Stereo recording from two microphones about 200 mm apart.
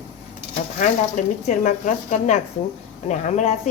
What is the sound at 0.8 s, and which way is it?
A woman's voice, 40° left (ahead or behind).